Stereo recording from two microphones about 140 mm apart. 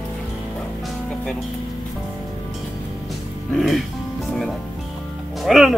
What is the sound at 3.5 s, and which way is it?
Speech, centre (ahead or behind).